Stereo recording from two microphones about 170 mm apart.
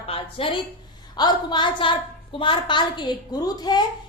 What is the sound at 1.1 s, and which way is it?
A woman's voice, 25° left (ahead or behind).